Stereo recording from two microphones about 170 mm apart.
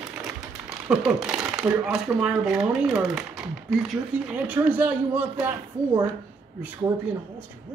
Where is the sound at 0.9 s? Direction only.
5° right (ahead or behind).